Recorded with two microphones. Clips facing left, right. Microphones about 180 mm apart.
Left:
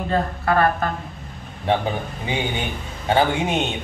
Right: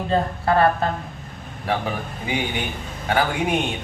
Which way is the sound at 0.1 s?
25° right (ahead or behind).